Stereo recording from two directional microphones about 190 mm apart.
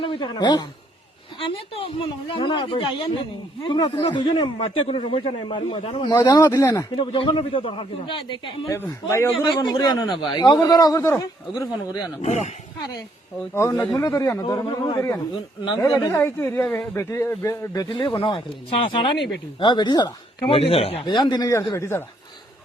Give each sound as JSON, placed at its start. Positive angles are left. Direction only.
{"t": 0.0, "sound": "a woman's voice", "side_deg": 25}
{"t": 7.0, "sound": "a man's voice", "side_deg": 25}
{"t": 8.7, "sound": "speech", "side_deg": 15}
{"t": 9.3, "sound": "a man's voice", "side_deg": 25}
{"t": 12.2, "sound": "speech", "side_deg": 35}
{"t": 13.5, "sound": "a man's voice", "side_deg": 15}